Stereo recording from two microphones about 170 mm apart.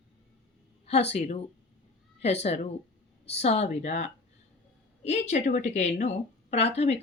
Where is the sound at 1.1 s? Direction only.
40° left (ahead or behind).